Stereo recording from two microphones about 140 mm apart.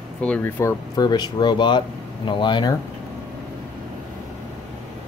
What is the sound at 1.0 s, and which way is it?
Speech, 30° left (ahead or behind).